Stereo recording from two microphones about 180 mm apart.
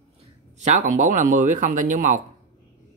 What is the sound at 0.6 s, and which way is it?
Speech, 45° right (ahead or behind).